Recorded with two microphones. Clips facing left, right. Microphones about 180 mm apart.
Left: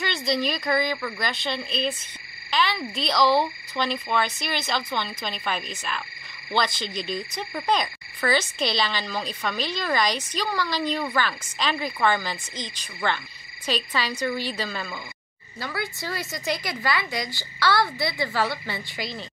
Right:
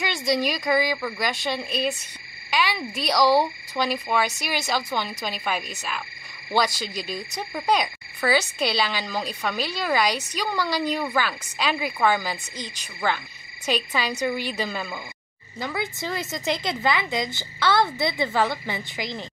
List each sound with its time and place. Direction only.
0.0 s speech: 15° right (ahead or behind)